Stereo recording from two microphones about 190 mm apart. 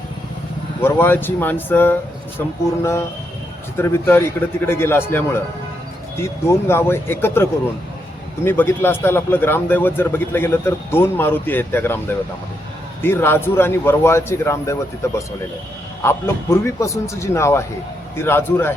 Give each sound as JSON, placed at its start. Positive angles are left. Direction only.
{"t": 0.8, "sound": "a man's voice", "side_deg": 10}
{"t": 3.8, "sound": "a man's voice", "side_deg": 10}
{"t": 8.4, "sound": "a man's voice", "side_deg": 10}
{"t": 13.0, "sound": "a man's voice", "side_deg": 10}